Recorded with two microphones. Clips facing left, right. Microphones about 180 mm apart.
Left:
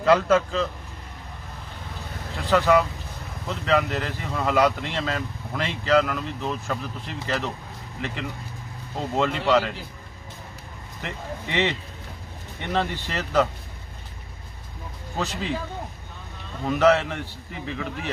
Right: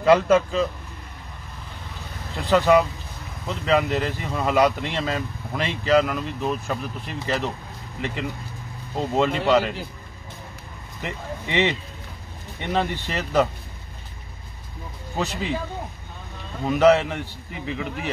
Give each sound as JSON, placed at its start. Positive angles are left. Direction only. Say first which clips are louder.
{"t": 0.0, "sound": "speech", "louder": "right 2 dB", "side_deg": -15}
{"t": 2.5, "sound": "speech", "louder": "right 2 dB", "side_deg": -20}
{"t": 8.9, "sound": "speech", "louder": "right 3 dB", "side_deg": -15}
{"t": 11.0, "sound": "speech", "louder": "right 2 dB", "side_deg": -15}
{"t": 12.7, "sound": "speech", "louder": "right 1 dB", "side_deg": -15}
{"t": 15.2, "sound": "speech", "louder": "right 2 dB", "side_deg": -15}
{"t": 16.6, "sound": "speech", "louder": "right 3 dB", "side_deg": -15}